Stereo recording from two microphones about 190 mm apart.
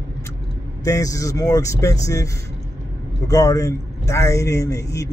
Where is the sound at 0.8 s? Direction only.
15° left (ahead or behind).